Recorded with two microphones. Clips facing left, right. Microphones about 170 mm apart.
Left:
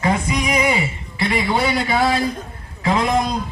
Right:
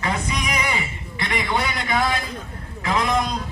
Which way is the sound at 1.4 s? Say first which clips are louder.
Left 5 dB; 10° left (ahead or behind).